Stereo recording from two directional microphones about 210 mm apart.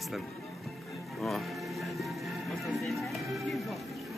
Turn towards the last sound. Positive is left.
turn(degrees=0)  # may be behind; listen again after turning